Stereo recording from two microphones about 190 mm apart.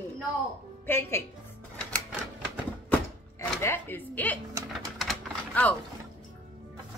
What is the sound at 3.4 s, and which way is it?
A woman's voice, 15° left (ahead or behind).